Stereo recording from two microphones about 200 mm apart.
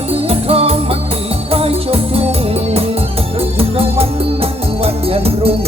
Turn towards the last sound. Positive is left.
turn(degrees=-30)  # may be behind; listen again after turning